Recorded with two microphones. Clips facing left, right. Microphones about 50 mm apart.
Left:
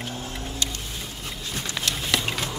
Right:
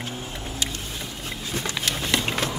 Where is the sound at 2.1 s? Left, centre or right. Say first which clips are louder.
Right 1 dB; centre.